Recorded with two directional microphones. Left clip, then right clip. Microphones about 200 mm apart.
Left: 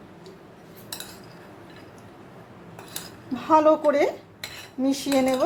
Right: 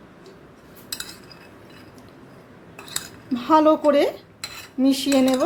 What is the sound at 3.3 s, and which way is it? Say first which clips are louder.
Speech: right 2 dB; 20° right (ahead or behind).